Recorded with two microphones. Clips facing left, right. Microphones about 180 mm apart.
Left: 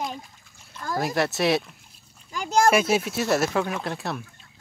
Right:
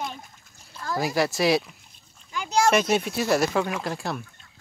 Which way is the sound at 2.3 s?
45° left (ahead or behind).